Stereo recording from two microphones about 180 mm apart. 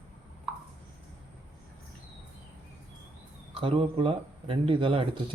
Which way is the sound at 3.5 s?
30° right (ahead or behind).